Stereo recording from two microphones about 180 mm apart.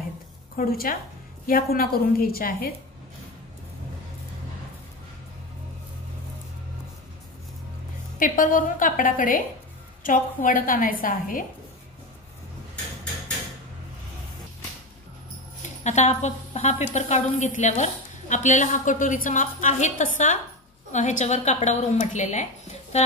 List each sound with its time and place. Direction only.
0.6 s a woman's voice: 55° left (ahead or behind)
8.2 s a woman's voice: 50° left (ahead or behind)
15.8 s a woman's voice: 40° left (ahead or behind)